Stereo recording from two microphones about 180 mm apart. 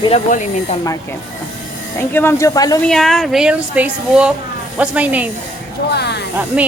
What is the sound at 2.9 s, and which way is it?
Speech, centre (ahead or behind).